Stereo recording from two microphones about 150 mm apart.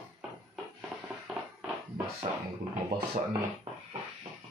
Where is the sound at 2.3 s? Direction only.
55° right (ahead or behind).